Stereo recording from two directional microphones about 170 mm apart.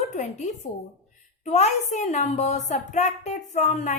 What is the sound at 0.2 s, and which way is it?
A woman's voice, 45° left (ahead or behind).